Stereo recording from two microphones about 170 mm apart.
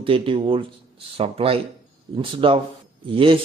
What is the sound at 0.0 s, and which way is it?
A man's voice, 30° right (ahead or behind).